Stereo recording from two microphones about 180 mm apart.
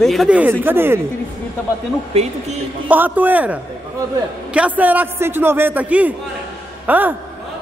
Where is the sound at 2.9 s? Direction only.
10° right (ahead or behind).